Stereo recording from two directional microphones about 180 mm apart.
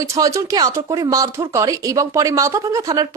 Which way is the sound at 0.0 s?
20° right (ahead or behind).